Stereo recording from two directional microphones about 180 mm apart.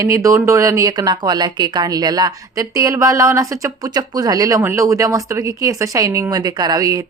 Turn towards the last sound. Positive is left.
turn(degrees=-20)  # may be behind; listen again after turning